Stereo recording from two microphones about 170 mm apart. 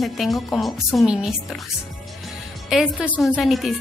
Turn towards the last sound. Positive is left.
turn(degrees=0)  # may be behind; listen again after turning